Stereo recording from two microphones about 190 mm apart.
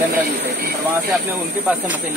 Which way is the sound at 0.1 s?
55° right (ahead or behind).